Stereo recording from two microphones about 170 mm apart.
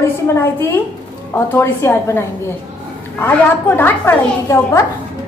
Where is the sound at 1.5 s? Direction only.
15° left (ahead or behind).